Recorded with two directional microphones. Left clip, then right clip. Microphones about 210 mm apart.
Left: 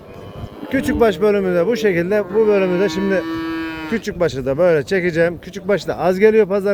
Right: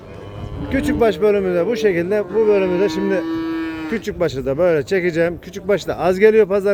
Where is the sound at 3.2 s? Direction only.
25° left (ahead or behind).